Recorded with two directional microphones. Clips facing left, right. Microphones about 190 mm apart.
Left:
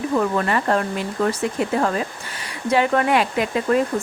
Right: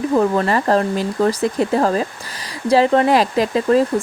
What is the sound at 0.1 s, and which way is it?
Speech, 35° right (ahead or behind).